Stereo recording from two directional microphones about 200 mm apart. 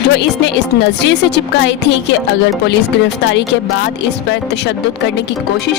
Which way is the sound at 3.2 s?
60° left (ahead or behind).